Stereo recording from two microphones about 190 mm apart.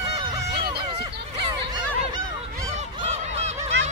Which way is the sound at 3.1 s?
35° right (ahead or behind).